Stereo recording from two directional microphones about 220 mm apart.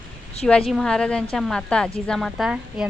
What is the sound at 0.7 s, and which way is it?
Speech, 5° left (ahead or behind).